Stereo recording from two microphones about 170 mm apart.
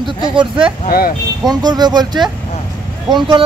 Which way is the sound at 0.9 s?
60° left (ahead or behind).